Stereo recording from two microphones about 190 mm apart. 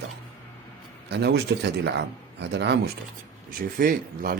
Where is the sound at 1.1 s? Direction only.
60° right (ahead or behind).